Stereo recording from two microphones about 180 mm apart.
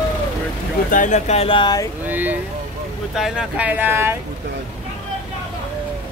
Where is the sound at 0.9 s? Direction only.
45° left (ahead or behind); by 1.9 s 25° left (ahead or behind).